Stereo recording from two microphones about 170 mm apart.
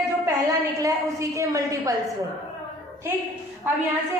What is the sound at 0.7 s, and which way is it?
A woman's voice, 20° right (ahead or behind).